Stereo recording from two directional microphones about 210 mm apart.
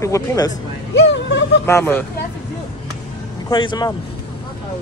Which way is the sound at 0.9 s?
60° left (ahead or behind).